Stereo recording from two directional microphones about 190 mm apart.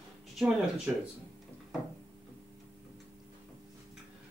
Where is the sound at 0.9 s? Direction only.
5° right (ahead or behind).